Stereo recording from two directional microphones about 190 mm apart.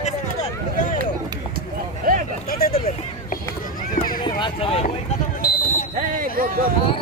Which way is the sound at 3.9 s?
50° left (ahead or behind).